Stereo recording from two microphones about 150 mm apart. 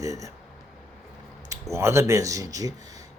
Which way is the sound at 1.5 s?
20° right (ahead or behind).